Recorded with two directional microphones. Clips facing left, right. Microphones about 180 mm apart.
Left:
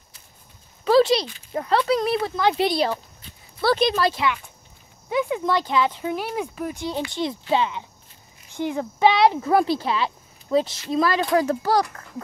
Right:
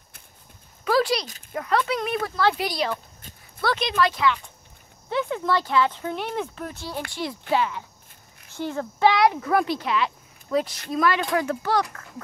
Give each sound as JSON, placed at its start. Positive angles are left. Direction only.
{"t": 0.8, "sound": "a sound", "side_deg": 25}
{"t": 1.5, "sound": "speech", "side_deg": 30}
{"t": 3.2, "sound": "dog", "side_deg": -45}
{"t": 3.6, "sound": "speech", "side_deg": 30}
{"t": 5.1, "sound": "speech", "side_deg": 15}